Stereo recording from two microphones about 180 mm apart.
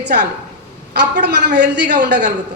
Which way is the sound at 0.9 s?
70° right (ahead or behind).